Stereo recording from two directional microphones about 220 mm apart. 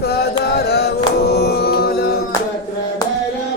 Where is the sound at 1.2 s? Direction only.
45° left (ahead or behind).